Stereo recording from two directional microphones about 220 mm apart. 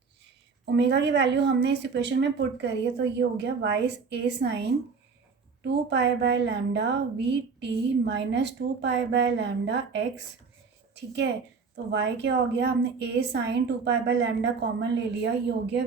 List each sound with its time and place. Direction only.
0.6 s a woman's voice: 50° right (ahead or behind)
5.6 s a woman's voice: 50° right (ahead or behind)
11.9 s a woman's voice: 50° right (ahead or behind)